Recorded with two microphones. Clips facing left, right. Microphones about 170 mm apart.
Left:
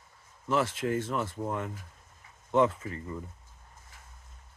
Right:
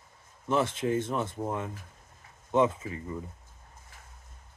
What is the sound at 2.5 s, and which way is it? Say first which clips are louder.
Speech: even; 20° right (ahead or behind).